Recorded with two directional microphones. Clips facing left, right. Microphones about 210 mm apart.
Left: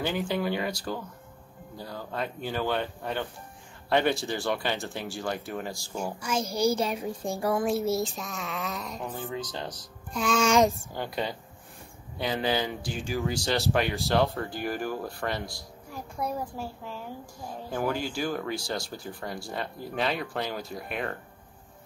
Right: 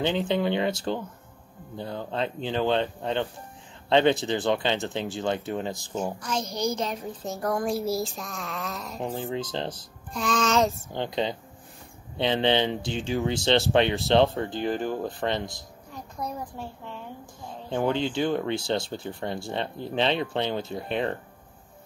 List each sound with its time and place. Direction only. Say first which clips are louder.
0.0 s speech: right 4 dB; 25° right (ahead or behind)
6.1 s a child's voice: left 1 dB; 10° left (ahead or behind)
7.5 s speech: even; centre (ahead or behind)
9.3 s speech: right 4 dB; 25° right (ahead or behind)
10.1 s a child's voice: left 1 dB; 5° left (ahead or behind)
10.9 s speech: right 4 dB; 20° right (ahead or behind)
15.9 s a child's voice: left 2 dB; 5° left (ahead or behind)
17.5 s speech: right 3 dB; 25° right (ahead or behind)